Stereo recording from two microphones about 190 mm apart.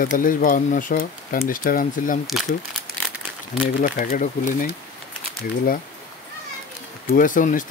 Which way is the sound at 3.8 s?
45° left (ahead or behind).